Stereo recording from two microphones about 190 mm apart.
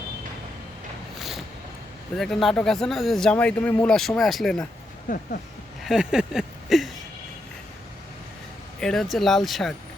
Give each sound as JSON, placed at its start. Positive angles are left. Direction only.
{"t": 2.1, "sound": "speech", "side_deg": 0}
{"t": 5.0, "sound": "speech", "side_deg": 45}
{"t": 5.8, "sound": "a sound", "side_deg": 0}
{"t": 8.8, "sound": "speech", "side_deg": 5}